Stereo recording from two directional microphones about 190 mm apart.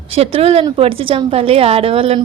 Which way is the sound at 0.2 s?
30° right (ahead or behind).